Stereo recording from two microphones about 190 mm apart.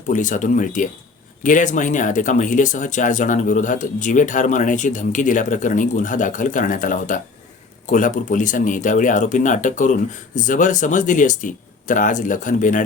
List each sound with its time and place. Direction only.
0.1 s speech: 40° left (ahead or behind)